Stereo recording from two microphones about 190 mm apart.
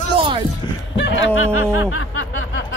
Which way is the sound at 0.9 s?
70° left (ahead or behind).